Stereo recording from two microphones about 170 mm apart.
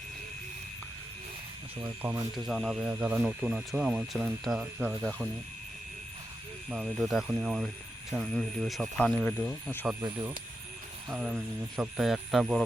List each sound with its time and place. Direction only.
2.0 s speech: 10° right (ahead or behind)
2.5 s speech: centre (ahead or behind)
2.8 s speech: 10° right (ahead or behind)
6.7 s speech: centre (ahead or behind)
10.0 s speech: 20° right (ahead or behind)
11.1 s speech: 5° right (ahead or behind)